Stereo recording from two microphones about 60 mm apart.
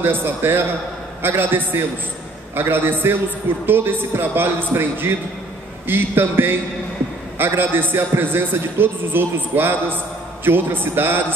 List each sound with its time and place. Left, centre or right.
0.0 s a man's voice: right